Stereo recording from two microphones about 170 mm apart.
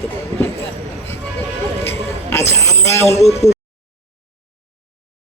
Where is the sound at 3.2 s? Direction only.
40° left (ahead or behind).